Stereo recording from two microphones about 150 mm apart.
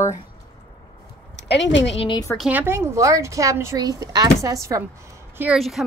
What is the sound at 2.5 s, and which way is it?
Speech, 15° right (ahead or behind).